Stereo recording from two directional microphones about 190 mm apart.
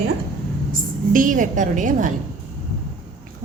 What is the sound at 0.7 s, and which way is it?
A woman's voice, 45° right (ahead or behind).